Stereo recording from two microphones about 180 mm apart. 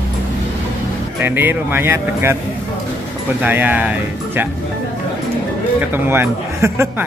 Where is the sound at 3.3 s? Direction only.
10° right (ahead or behind).